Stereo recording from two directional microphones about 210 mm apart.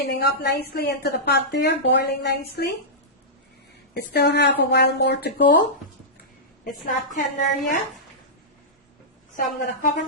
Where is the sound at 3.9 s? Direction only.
50° left (ahead or behind).